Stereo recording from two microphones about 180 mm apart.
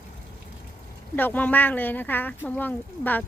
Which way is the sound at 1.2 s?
10° left (ahead or behind).